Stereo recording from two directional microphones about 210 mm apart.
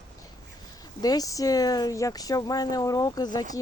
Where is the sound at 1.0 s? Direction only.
15° left (ahead or behind).